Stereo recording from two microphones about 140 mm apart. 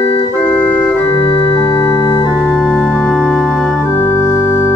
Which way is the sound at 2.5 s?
5° left (ahead or behind).